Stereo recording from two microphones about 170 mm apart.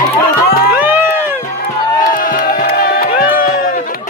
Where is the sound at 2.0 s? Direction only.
55° left (ahead or behind).